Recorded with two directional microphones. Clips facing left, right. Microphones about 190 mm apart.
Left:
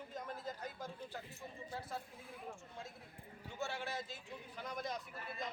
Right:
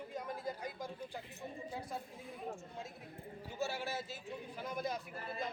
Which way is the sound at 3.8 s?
5° right (ahead or behind).